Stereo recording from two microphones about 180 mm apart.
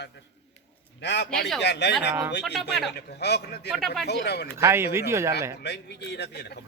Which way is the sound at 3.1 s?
65° left (ahead or behind).